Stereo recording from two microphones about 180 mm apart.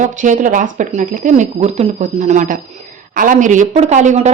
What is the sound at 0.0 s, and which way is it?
Speech, 45° right (ahead or behind).